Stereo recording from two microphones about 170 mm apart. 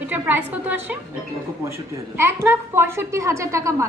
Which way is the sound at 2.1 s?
15° right (ahead or behind).